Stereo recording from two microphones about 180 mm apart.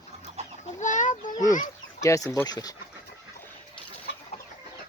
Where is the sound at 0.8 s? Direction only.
45° left (ahead or behind).